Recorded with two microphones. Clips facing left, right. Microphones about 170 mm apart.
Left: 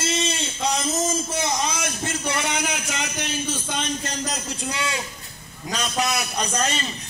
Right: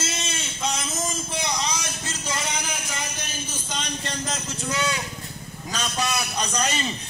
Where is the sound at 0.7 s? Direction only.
40° left (ahead or behind).